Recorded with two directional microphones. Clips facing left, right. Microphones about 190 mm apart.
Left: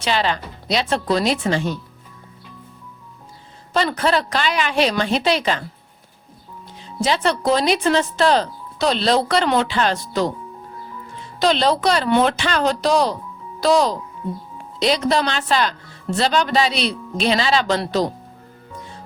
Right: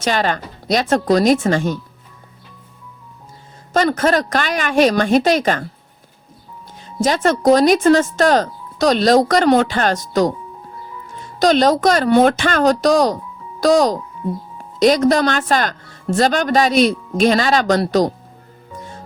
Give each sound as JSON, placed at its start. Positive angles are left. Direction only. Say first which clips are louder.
{"t": 0.0, "sound": "speech", "louder": "right 2 dB", "side_deg": -45}
{"t": 3.7, "sound": "speech", "louder": "right 4 dB", "side_deg": -45}
{"t": 7.0, "sound": "speech", "louder": "right 4 dB", "side_deg": -45}
{"t": 11.3, "sound": "speech", "louder": "right 4 dB", "side_deg": -45}